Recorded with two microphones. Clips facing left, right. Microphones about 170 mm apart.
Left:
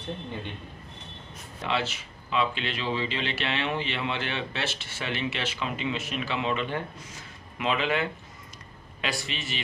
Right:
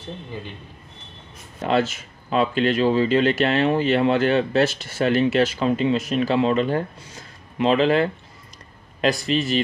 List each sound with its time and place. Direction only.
1.6 s speech: 45° right (ahead or behind)